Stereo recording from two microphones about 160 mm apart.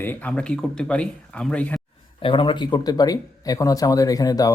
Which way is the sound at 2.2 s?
30° left (ahead or behind).